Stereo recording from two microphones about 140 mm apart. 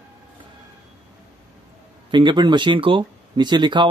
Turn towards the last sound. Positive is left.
turn(degrees=-35)  # may be behind; listen again after turning